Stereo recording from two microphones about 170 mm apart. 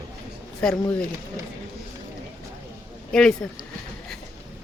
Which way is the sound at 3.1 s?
5° left (ahead or behind).